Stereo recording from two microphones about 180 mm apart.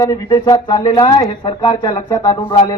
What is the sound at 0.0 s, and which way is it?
A man's voice, 20° left (ahead or behind).